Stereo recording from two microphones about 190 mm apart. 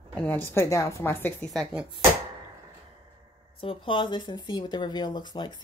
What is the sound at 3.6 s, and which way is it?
Speech, 25° left (ahead or behind).